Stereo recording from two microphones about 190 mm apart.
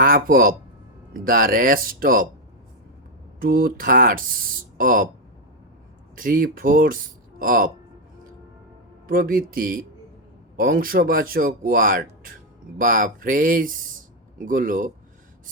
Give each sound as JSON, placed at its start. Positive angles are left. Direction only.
{"t": 0.0, "sound": "speech", "side_deg": -50}
{"t": 3.4, "sound": "speech", "side_deg": -50}
{"t": 6.1, "sound": "speech", "side_deg": -45}
{"t": 9.0, "sound": "speech", "side_deg": -50}